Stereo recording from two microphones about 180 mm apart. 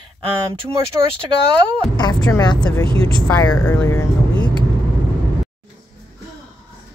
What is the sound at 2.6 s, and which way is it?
Speech, 10° left (ahead or behind).